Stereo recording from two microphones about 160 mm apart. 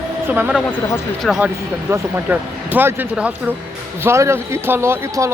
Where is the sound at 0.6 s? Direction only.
15° left (ahead or behind).